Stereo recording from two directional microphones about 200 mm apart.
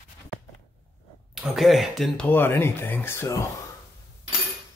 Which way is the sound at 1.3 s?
Centre (ahead or behind).